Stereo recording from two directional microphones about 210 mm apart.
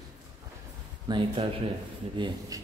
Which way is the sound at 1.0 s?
25° right (ahead or behind).